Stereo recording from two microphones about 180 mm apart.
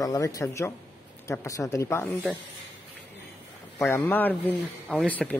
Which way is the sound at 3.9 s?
10° left (ahead or behind).